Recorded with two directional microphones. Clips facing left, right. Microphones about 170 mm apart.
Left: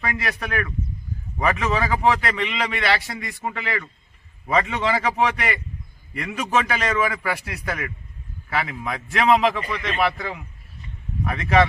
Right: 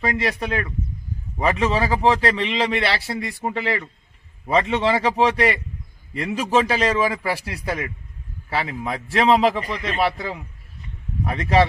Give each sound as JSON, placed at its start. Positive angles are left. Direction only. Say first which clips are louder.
{"t": 0.0, "sound": "a man's voice", "louder": "right 4 dB", "side_deg": -30}